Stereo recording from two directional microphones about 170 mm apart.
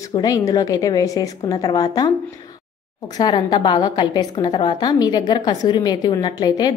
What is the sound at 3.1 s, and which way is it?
A woman's voice, 25° left (ahead or behind).